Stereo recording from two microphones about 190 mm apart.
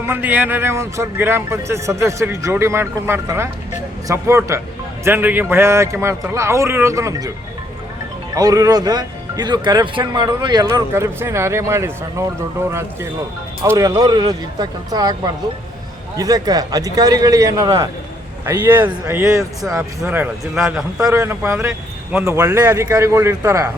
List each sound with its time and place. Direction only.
0.0 s speech: 10° right (ahead or behind)
8.4 s speech: 20° right (ahead or behind)